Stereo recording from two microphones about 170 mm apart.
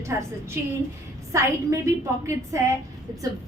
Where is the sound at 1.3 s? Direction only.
15° right (ahead or behind).